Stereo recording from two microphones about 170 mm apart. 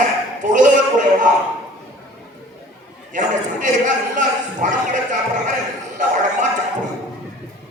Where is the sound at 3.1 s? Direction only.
50° right (ahead or behind).